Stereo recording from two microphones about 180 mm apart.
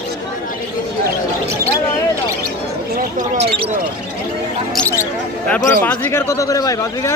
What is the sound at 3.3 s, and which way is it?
Speech, 35° right (ahead or behind).